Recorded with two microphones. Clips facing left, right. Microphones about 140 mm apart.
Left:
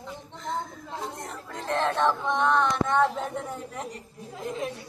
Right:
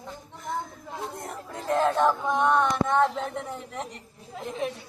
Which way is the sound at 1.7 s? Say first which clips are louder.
Right 2 dB; 10° right (ahead or behind).